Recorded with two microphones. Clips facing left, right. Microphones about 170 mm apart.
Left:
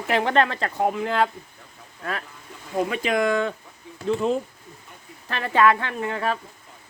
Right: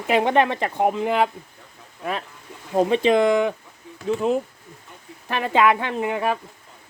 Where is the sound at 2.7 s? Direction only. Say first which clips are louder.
Right 6 dB; 25° right (ahead or behind).